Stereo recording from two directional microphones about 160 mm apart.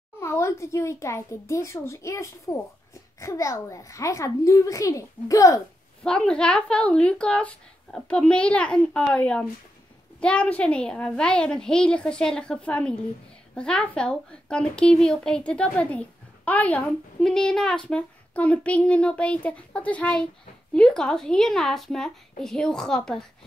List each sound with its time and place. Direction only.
0.2 s a child's voice: 15° left (ahead or behind)
6.0 s a child's voice: 5° left (ahead or behind)